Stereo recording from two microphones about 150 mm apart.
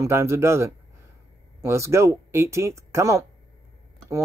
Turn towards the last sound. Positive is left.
turn(degrees=-20)  # may be behind; listen again after turning